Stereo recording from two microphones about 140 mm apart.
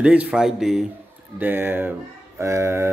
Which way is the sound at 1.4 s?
15° right (ahead or behind).